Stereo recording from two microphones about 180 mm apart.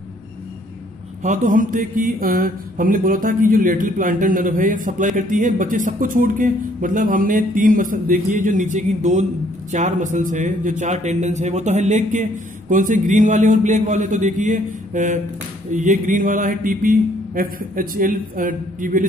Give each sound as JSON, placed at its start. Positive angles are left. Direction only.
{"t": 1.2, "sound": "speech", "side_deg": -45}